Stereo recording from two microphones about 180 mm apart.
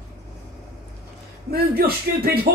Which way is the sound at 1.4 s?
55° right (ahead or behind).